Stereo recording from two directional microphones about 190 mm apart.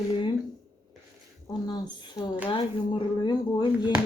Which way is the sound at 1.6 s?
20° left (ahead or behind).